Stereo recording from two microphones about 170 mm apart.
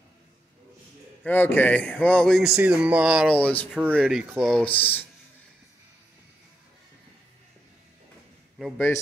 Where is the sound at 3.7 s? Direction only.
5° right (ahead or behind).